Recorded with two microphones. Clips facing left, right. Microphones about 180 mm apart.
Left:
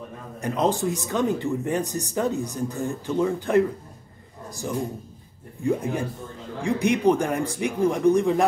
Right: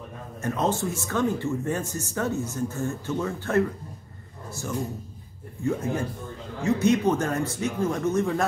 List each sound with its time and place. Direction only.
0.4 s speech: 15° left (ahead or behind)
5.6 s speech: 15° left (ahead or behind)